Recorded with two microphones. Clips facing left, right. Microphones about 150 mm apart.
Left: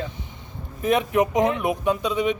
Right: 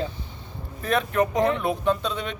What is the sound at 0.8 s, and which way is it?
Speech, 15° left (ahead or behind).